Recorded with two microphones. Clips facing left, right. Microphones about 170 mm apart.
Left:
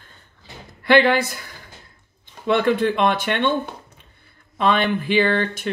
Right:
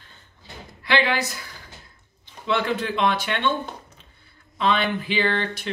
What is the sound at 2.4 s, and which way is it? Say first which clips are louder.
Speech: left 6 dB; 50° left (ahead or behind).